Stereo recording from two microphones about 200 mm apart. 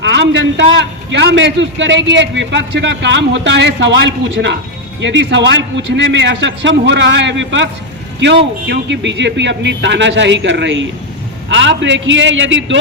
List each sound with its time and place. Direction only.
0.0 s a man's voice: 60° right (ahead or behind)